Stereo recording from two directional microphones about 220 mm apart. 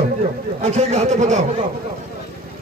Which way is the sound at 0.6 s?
30° right (ahead or behind).